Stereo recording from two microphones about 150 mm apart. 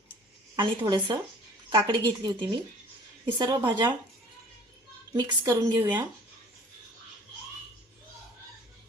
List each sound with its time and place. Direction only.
0.5 s a woman's voice: 30° right (ahead or behind)
5.1 s a woman's voice: 25° right (ahead or behind)